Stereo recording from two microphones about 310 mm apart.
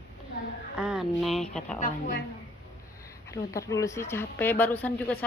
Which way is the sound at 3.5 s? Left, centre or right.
Centre.